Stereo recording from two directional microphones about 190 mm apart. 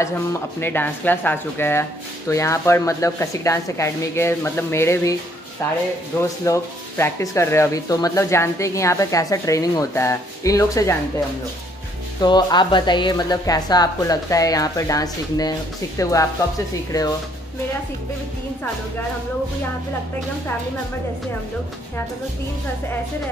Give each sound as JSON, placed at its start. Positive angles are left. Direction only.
{"t": 0.0, "sound": "speech", "side_deg": 15}
{"t": 12.2, "sound": "a woman's voice", "side_deg": 20}